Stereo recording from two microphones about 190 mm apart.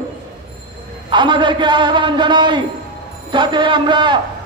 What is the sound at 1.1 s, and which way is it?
A man's voice, 25° right (ahead or behind).